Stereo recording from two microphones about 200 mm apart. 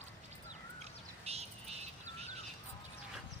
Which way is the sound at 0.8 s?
30° right (ahead or behind).